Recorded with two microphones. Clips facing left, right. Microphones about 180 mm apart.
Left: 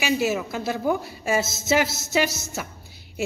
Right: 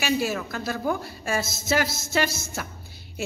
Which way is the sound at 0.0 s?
10° left (ahead or behind).